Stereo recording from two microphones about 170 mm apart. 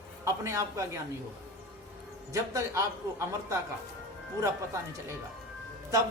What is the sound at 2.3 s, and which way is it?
A man's voice, 20° right (ahead or behind).